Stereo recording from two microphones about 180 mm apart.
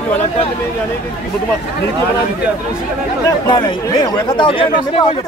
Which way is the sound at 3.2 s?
25° left (ahead or behind).